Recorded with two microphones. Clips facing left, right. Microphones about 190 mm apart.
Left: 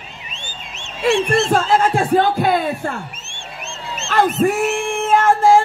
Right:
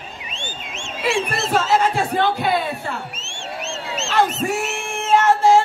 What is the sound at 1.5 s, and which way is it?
Speech, 50° left (ahead or behind).